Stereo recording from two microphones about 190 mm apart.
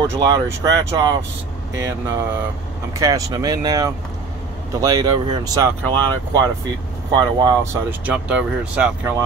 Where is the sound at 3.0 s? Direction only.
15° right (ahead or behind).